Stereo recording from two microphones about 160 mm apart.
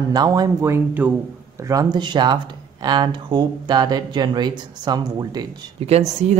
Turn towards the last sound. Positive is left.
turn(degrees=-40)  # may be behind; listen again after turning